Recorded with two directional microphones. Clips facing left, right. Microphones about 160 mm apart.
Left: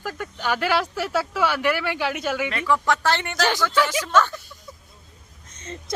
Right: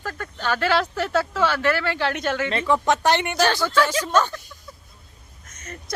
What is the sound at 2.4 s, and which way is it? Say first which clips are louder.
Speech: right 2 dB; 25° right (ahead or behind).